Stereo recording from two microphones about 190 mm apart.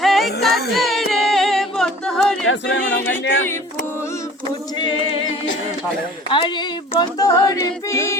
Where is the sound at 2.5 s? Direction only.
75° left (ahead or behind).